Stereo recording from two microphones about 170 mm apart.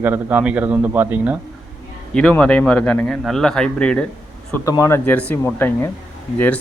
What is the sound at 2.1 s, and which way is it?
A man's voice, 5° left (ahead or behind).